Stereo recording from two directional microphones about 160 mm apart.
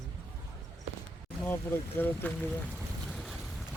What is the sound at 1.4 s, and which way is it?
Speech, 10° left (ahead or behind).